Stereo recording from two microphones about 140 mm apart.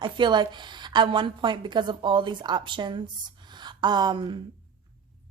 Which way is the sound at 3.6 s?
30° right (ahead or behind).